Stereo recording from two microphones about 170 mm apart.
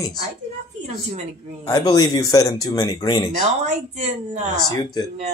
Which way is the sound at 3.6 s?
40° right (ahead or behind).